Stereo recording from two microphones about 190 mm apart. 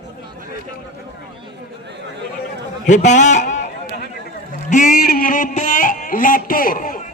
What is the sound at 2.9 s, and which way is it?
Speech, 40° left (ahead or behind).